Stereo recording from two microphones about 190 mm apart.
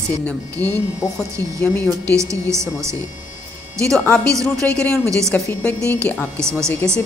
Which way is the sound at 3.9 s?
5° left (ahead or behind).